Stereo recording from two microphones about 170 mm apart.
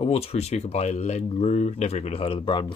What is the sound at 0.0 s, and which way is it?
Speech, 35° left (ahead or behind).